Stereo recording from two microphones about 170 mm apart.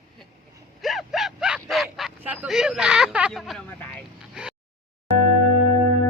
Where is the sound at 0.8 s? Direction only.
Centre (ahead or behind).